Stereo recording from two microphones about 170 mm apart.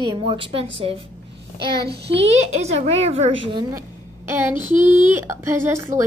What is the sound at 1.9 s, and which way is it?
Speech, 80° right.